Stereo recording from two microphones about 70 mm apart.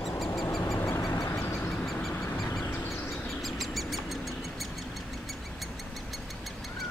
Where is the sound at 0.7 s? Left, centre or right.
Left.